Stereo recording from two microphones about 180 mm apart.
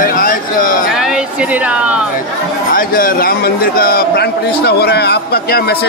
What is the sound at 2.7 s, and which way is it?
A man's voice, 50° left (ahead or behind).